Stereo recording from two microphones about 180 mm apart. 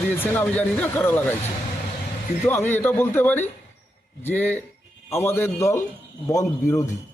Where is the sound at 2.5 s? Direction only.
10° left (ahead or behind).